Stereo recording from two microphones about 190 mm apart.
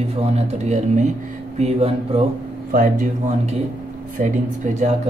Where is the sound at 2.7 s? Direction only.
45° right (ahead or behind).